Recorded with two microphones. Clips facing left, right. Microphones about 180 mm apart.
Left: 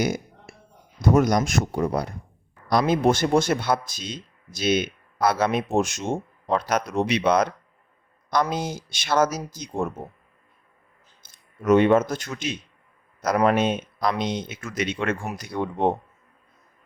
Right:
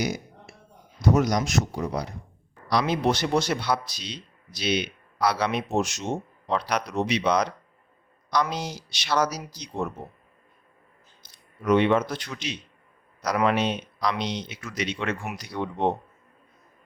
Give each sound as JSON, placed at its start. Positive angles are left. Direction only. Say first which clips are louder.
{"t": 0.0, "sound": "a sound", "louder": "left 4 dB", "side_deg": 50}
{"t": 0.9, "sound": "speech", "louder": "left 3 dB", "side_deg": 50}
{"t": 11.2, "sound": "speech", "louder": "left 2 dB", "side_deg": 45}